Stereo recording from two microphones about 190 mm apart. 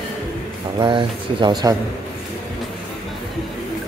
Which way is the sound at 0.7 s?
25° right (ahead or behind).